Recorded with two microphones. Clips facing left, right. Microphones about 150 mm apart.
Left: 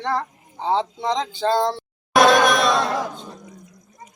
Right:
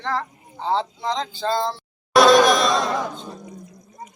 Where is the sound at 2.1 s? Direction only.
55° left (ahead or behind).